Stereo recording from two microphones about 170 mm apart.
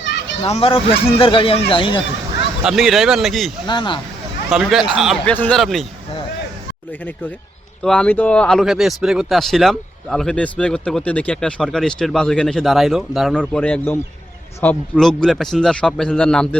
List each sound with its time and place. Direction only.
0.4 s speech: 35° left (ahead or behind)
2.6 s speech: centre (ahead or behind)
3.7 s speech: 30° left (ahead or behind)
4.4 s speech: centre (ahead or behind)
7.8 s speech: 5° left (ahead or behind)